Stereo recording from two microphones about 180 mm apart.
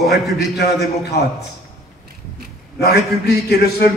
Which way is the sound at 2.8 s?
65° left (ahead or behind).